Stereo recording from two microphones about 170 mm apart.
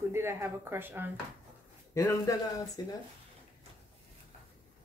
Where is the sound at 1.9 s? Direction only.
20° left (ahead or behind).